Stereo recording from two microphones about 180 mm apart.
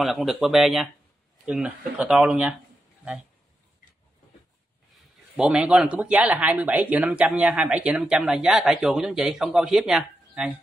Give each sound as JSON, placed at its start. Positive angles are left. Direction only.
{"t": 0.0, "sound": "speech", "side_deg": 0}
{"t": 4.9, "sound": "speech", "side_deg": -5}